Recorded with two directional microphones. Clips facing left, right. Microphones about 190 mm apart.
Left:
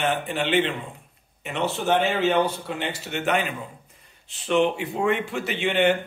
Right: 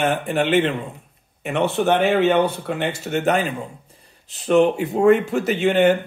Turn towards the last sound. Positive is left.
turn(degrees=-45)  # may be behind; listen again after turning